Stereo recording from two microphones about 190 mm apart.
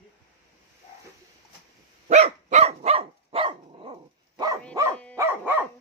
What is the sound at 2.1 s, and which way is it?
Dog, 35° right (ahead or behind).